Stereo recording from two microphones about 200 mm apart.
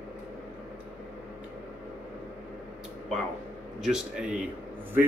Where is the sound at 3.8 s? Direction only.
5° right (ahead or behind).